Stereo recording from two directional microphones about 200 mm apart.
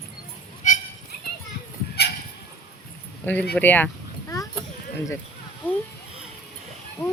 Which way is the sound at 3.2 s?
5° left (ahead or behind).